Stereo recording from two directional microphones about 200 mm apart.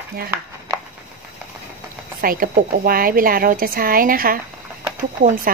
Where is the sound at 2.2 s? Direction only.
45° right (ahead or behind).